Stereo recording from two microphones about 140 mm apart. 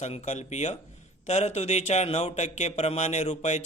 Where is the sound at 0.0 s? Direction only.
55° left (ahead or behind).